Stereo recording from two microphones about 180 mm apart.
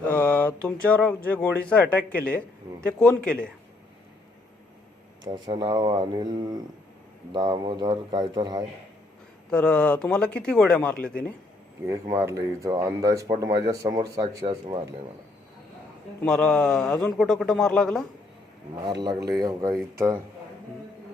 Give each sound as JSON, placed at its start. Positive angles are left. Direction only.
{"t": 0.1, "sound": "a man's voice", "side_deg": 10}
{"t": 5.2, "sound": "speech", "side_deg": -25}
{"t": 9.5, "sound": "a man's voice", "side_deg": 5}
{"t": 11.9, "sound": "speech", "side_deg": -20}
{"t": 16.2, "sound": "a man's voice", "side_deg": 5}
{"t": 19.3, "sound": "speech", "side_deg": -20}